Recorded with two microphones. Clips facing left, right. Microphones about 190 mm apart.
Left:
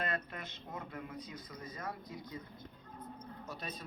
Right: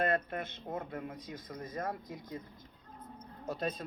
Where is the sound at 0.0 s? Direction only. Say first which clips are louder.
Right 7 dB; 50° right (ahead or behind).